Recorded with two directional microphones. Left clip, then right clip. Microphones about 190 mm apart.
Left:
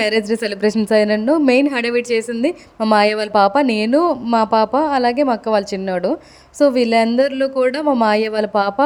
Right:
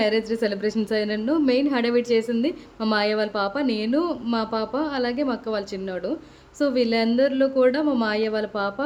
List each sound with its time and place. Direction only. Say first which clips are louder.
0.0 s a woman's voice: left 5 dB; 40° left (ahead or behind)